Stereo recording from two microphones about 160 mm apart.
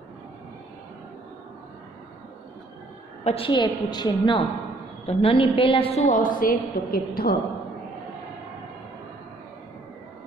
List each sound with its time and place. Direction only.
3.3 s a woman's voice: 35° left (ahead or behind); by 7.3 s 70° left (ahead or behind)